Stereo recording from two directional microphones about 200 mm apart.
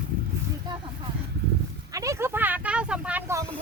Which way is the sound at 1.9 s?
15° right (ahead or behind).